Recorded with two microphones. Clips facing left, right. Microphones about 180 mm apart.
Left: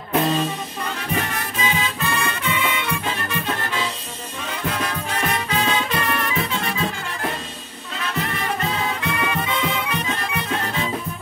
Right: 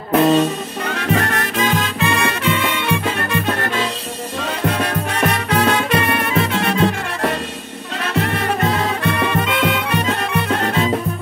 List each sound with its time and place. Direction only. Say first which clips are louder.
0.3 s music: right 8 dB; 70° right (ahead or behind)